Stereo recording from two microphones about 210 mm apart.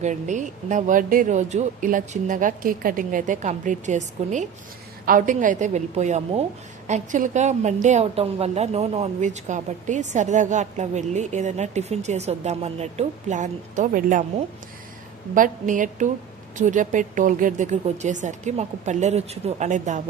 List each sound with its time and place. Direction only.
0.0 s a woman's voice: 35° right (ahead or behind)
15.4 s a woman's voice: 40° right (ahead or behind)